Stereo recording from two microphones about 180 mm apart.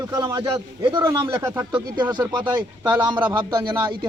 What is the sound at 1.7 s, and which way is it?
Speech, 25° right (ahead or behind).